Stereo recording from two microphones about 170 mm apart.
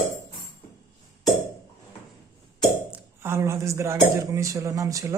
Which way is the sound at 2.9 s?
15° right (ahead or behind).